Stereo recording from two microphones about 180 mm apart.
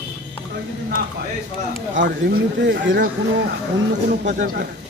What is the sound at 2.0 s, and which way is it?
A man's voice, 75° right (ahead or behind).